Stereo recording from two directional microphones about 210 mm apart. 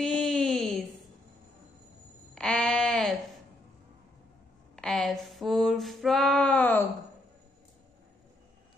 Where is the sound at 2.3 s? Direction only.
5° left (ahead or behind).